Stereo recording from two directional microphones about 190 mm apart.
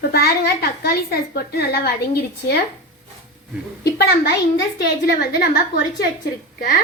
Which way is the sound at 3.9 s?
55° left (ahead or behind).